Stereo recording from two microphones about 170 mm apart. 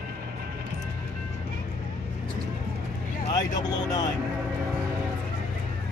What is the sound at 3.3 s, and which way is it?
Speech, 20° left (ahead or behind).